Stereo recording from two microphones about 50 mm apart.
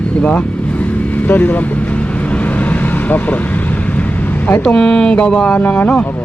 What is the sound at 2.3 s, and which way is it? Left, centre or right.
Vehicle, left.